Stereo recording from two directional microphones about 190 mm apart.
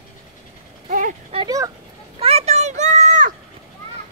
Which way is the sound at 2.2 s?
35° right (ahead or behind).